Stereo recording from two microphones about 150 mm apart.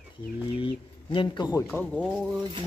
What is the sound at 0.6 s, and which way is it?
Speech, 35° left (ahead or behind).